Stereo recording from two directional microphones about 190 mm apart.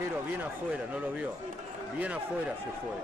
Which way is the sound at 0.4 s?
10° right (ahead or behind).